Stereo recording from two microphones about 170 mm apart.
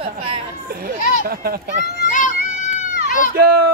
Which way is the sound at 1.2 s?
60° right (ahead or behind).